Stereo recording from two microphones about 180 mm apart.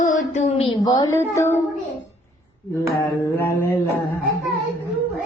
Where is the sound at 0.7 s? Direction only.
20° left (ahead or behind).